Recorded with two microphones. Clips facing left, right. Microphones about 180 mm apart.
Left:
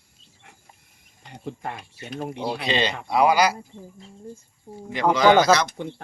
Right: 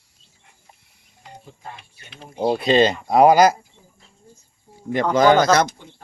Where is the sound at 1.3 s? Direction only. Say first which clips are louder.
Left 7 dB; 70° left (ahead or behind).